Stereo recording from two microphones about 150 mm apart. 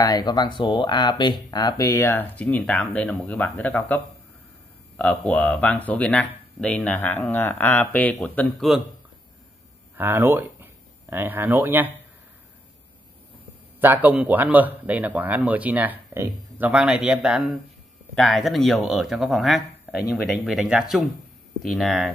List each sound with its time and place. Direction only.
0.0 s speech: 25° left (ahead or behind); by 8.6 s 10° left (ahead or behind)
9.9 s speech: 15° right (ahead or behind)
13.7 s a man's voice: 15° right (ahead or behind)